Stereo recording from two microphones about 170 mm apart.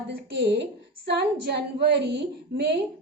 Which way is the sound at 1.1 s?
75° right (ahead or behind).